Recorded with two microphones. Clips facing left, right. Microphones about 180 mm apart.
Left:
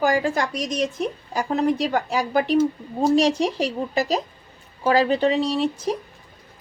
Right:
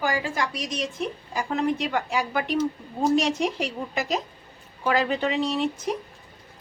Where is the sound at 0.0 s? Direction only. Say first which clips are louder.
Left 6 dB; 45° left (ahead or behind).